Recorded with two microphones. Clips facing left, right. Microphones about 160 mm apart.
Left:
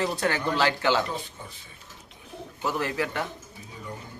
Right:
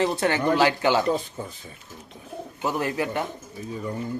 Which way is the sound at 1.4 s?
45° right (ahead or behind).